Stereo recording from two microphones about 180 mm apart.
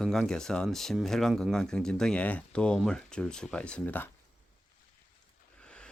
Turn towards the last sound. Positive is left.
turn(degrees=5)  # may be behind; listen again after turning